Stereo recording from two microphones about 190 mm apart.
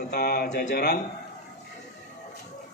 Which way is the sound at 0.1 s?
55° left (ahead or behind).